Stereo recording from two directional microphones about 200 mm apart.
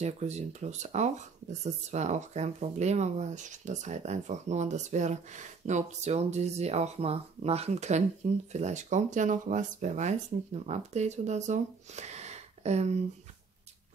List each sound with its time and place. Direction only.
0.0 s speech: 35° right (ahead or behind)